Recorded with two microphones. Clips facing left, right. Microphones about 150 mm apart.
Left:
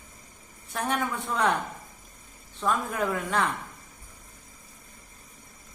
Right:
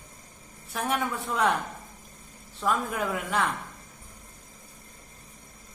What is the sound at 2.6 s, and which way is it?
Speech, 5° right (ahead or behind).